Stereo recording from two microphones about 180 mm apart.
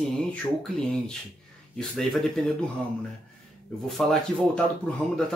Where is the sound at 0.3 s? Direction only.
5° left (ahead or behind).